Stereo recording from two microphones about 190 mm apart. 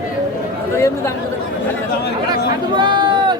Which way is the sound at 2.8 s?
25° right (ahead or behind).